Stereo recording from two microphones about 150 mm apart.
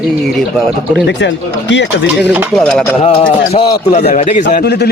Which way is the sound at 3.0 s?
40° left (ahead or behind).